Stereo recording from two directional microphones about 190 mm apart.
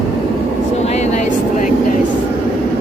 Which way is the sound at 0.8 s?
35° left (ahead or behind).